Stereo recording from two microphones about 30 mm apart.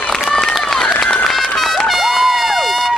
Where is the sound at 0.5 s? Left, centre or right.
Centre.